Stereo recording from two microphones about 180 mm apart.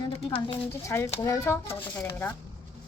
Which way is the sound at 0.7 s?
15° left (ahead or behind).